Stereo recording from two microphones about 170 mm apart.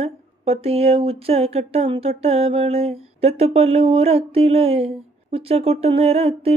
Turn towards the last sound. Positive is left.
turn(degrees=-35)  # may be behind; listen again after turning